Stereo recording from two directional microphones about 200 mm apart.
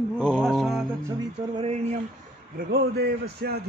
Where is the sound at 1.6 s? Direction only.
30° right (ahead or behind).